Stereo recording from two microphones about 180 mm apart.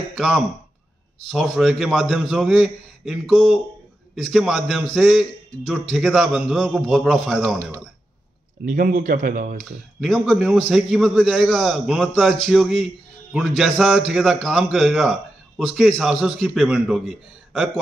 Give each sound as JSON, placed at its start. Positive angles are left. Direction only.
{"t": 0.1, "sound": "a man's voice", "side_deg": 0}
{"t": 7.4, "sound": "speech", "side_deg": -15}
{"t": 8.6, "sound": "speech", "side_deg": -50}
{"t": 9.7, "sound": "a man's voice", "side_deg": 0}